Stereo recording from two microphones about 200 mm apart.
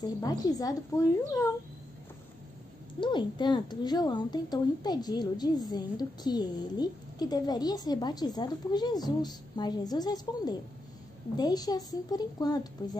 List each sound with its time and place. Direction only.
0.0 s speech: 20° left (ahead or behind)
3.0 s speech: 25° left (ahead or behind)